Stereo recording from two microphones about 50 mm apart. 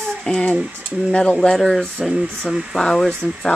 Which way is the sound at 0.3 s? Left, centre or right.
Left.